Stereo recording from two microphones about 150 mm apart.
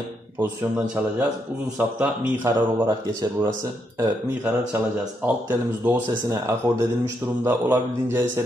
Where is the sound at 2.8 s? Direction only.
20° right (ahead or behind).